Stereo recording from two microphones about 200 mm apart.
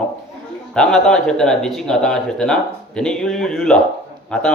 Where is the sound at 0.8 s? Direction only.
5° left (ahead or behind).